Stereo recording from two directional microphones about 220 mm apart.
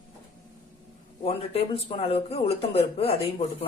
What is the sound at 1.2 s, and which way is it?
Speech, 25° left (ahead or behind).